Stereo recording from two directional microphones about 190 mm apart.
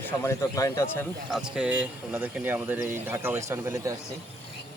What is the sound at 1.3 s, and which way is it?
A man's voice, 5° right (ahead or behind).